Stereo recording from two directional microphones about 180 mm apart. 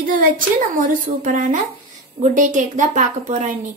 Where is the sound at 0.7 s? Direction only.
45° right (ahead or behind).